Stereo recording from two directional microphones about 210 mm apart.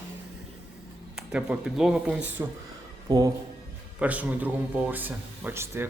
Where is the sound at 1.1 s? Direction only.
5° right (ahead or behind).